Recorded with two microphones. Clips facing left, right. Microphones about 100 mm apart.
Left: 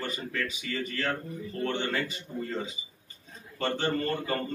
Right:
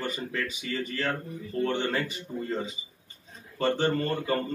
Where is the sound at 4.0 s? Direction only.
20° right (ahead or behind).